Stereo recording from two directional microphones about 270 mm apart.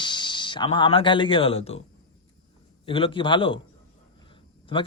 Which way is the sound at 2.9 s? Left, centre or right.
Centre.